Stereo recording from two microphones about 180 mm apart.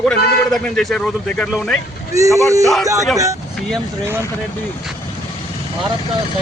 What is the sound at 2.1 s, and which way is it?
Speech, 15° right (ahead or behind).